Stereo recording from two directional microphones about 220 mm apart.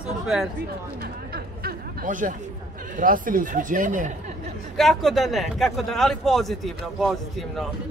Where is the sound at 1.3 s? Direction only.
45° right (ahead or behind).